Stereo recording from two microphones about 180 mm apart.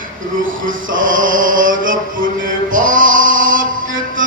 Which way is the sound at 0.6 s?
50° right (ahead or behind).